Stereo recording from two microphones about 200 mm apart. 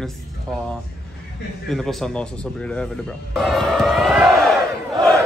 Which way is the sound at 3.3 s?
Centre (ahead or behind).